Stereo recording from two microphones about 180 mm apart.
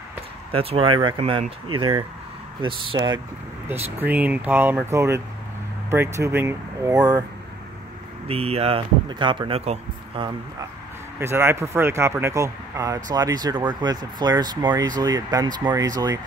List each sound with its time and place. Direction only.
0.5 s speech: 30° right (ahead or behind)
3.6 s speech: 10° right (ahead or behind)
8.3 s speech: 35° right (ahead or behind)
11.1 s speech: 15° right (ahead or behind)